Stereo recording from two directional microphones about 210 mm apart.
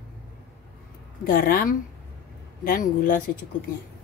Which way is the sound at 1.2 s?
45° left (ahead or behind).